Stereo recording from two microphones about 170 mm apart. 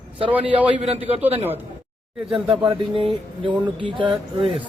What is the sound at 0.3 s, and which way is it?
Speech, 10° right (ahead or behind).